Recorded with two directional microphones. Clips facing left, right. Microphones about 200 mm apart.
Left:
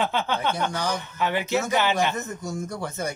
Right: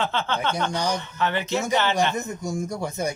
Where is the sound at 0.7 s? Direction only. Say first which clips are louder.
Right 2 dB; 15° right (ahead or behind).